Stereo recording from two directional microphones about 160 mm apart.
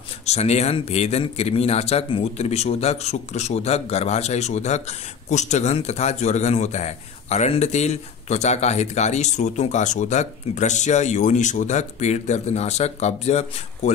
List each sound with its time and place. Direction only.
0.3 s speech: 45° left (ahead or behind)